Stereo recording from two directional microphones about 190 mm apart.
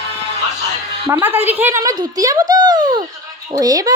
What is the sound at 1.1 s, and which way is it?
A child's voice, 10° right (ahead or behind).